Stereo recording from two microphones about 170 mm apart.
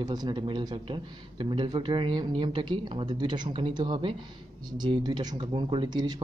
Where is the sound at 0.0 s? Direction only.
25° right (ahead or behind).